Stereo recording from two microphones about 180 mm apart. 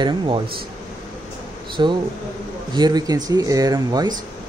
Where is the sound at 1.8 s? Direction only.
25° right (ahead or behind).